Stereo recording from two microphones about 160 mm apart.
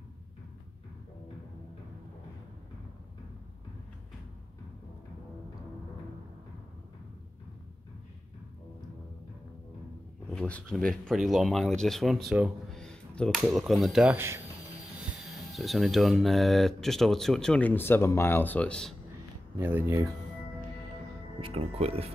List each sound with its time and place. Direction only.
10.3 s speech: 5° left (ahead or behind)
14.1 s speech: 15° right (ahead or behind)
15.5 s speech: centre (ahead or behind)
19.6 s speech: 15° right (ahead or behind)
21.4 s speech: 35° right (ahead or behind)